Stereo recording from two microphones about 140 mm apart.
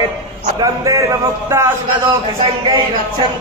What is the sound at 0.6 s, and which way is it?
A man's voice, 25° right (ahead or behind).